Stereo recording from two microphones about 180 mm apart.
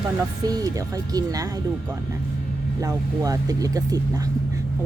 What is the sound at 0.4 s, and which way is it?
Speech, 20° right (ahead or behind).